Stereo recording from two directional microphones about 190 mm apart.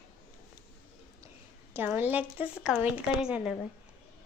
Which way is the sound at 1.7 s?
10° right (ahead or behind).